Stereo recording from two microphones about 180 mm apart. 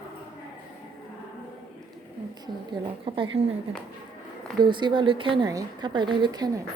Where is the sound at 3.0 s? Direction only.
30° right (ahead or behind).